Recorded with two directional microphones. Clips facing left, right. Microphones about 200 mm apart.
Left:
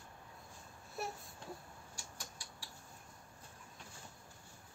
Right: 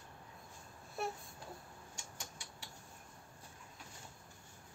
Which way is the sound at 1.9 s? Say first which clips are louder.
Right 1 dB; 25° right (ahead or behind).